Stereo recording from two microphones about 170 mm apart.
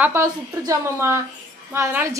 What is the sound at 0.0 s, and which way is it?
A woman's voice, 15° right (ahead or behind).